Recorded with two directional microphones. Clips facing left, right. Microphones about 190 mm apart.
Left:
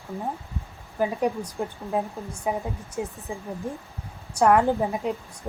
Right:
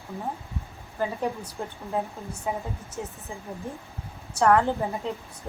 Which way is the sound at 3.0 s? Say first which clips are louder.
Left 5 dB; 15° left (ahead or behind).